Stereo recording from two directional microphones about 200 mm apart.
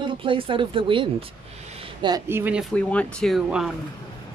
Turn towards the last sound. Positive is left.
turn(degrees=0)  # may be behind; listen again after turning